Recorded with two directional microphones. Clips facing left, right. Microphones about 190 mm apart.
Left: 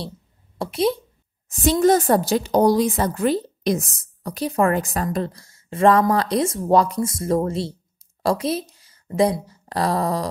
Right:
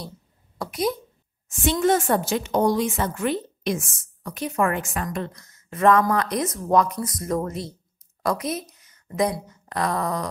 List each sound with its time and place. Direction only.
0.6 s speech: 30° left (ahead or behind)
1.5 s a woman's voice: 40° left (ahead or behind)